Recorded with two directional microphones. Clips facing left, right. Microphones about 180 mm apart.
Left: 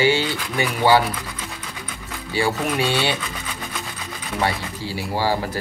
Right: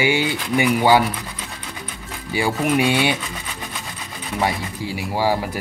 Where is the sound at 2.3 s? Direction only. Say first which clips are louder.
Right 2 dB; 15° right (ahead or behind).